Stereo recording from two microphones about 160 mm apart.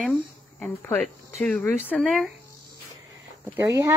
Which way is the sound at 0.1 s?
10° left (ahead or behind).